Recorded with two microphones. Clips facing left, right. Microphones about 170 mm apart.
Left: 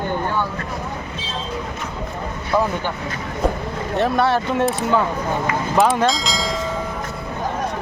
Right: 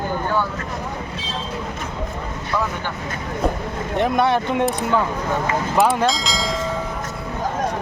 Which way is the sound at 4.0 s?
20° right (ahead or behind).